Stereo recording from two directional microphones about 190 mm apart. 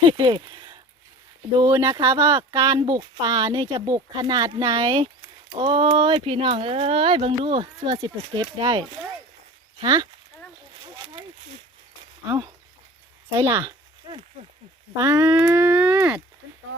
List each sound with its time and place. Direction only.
0.1 s speech: 25° right (ahead or behind)
13.3 s a sound: 15° right (ahead or behind)
14.9 s speech: 20° right (ahead or behind)